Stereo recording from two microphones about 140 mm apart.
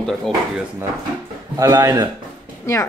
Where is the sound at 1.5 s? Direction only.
25° right (ahead or behind).